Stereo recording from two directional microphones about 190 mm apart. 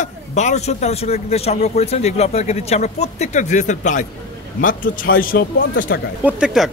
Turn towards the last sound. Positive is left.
turn(degrees=-5)  # may be behind; listen again after turning